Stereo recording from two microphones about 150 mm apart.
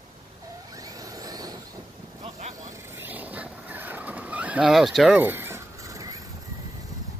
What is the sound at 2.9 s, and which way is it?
Vehicle, 10° right (ahead or behind).